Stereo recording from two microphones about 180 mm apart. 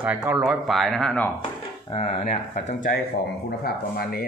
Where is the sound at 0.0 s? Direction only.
10° right (ahead or behind).